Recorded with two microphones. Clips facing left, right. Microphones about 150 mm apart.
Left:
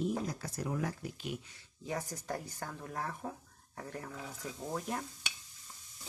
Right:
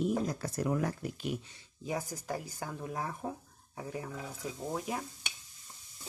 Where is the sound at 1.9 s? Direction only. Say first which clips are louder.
Right 2 dB; 10° right (ahead or behind).